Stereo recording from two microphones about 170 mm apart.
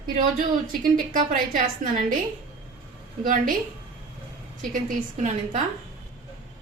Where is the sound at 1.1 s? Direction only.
50° right (ahead or behind).